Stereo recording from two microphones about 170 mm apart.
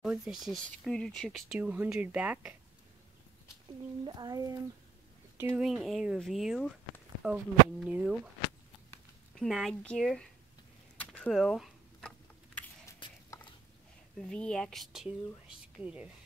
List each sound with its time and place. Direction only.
0.0 s speech: 5° right (ahead or behind)
1.6 s speech: 10° right (ahead or behind)
4.0 s speech: 25° right (ahead or behind)
5.6 s speech: centre (ahead or behind)
9.4 s speech: centre (ahead or behind)
11.0 s a sound: 5° left (ahead or behind)
12.5 s a sound: 10° left (ahead or behind)
14.1 s speech: 5° left (ahead or behind)